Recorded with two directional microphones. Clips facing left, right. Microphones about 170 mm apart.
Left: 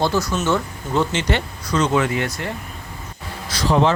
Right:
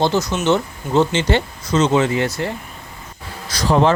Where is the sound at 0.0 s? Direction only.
20° right (ahead or behind).